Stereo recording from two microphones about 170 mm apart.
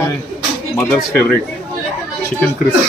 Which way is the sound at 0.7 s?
5° left (ahead or behind).